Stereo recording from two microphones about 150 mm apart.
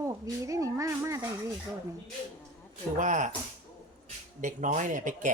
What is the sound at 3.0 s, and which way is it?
Speech, 55° right (ahead or behind).